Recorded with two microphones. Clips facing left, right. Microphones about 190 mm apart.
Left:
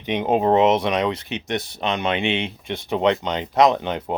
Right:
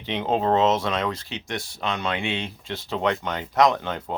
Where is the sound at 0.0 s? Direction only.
15° left (ahead or behind).